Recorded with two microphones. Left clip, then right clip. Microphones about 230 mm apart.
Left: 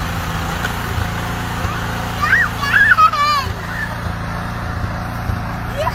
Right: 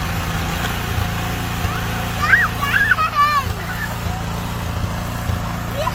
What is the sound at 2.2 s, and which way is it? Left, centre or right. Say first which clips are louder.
Music: even; left.